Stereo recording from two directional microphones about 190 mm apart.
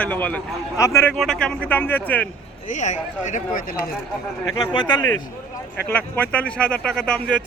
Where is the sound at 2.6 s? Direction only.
40° left (ahead or behind).